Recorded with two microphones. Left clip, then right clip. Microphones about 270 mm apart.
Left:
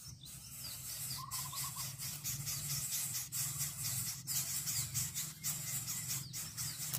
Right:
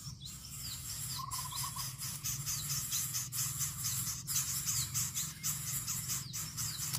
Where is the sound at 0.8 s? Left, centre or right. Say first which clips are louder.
Right 3 dB; centre.